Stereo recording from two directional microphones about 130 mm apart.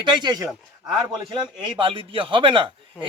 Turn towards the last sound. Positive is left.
turn(degrees=-40)  # may be behind; listen again after turning